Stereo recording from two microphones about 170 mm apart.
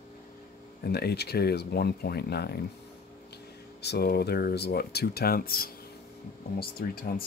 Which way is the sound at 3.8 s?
70° left (ahead or behind).